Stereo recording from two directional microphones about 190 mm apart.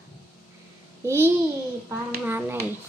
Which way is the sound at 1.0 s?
10° right (ahead or behind).